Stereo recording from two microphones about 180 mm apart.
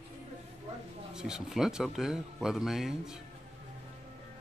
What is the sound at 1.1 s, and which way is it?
Speech, 5° right (ahead or behind).